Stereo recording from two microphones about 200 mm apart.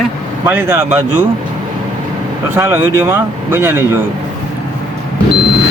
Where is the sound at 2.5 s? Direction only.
10° right (ahead or behind).